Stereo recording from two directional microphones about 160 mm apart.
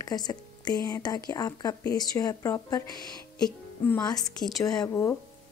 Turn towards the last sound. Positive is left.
turn(degrees=20)  # may be behind; listen again after turning